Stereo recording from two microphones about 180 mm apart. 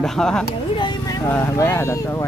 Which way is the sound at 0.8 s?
20° left (ahead or behind).